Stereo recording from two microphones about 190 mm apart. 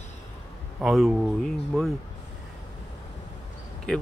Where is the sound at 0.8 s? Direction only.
5° right (ahead or behind).